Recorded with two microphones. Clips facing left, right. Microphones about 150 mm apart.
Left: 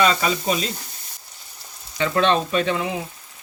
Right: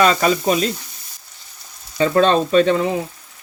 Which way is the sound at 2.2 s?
45° right (ahead or behind).